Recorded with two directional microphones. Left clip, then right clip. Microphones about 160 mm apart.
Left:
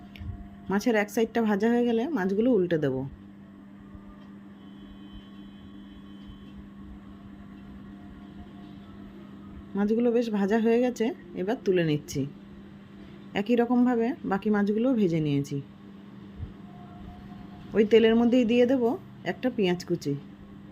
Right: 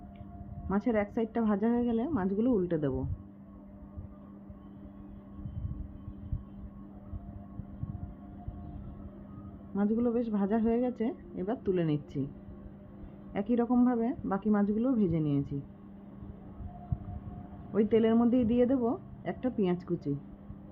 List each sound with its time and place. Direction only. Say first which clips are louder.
0.7 s speech: left 5 dB; 25° left (ahead or behind)
9.7 s speech: left 6 dB; 20° left (ahead or behind)
13.3 s speech: left 5 dB; 20° left (ahead or behind)
17.7 s speech: left 6 dB; 20° left (ahead or behind)